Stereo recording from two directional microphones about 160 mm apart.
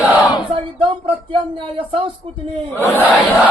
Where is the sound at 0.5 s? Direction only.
30° right (ahead or behind).